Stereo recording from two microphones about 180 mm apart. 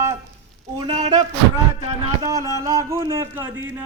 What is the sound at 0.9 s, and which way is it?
Speech, 40° right (ahead or behind).